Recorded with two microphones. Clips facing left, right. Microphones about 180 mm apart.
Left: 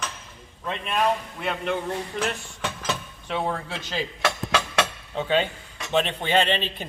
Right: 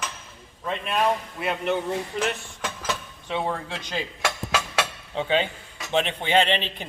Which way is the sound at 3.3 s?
15° right (ahead or behind).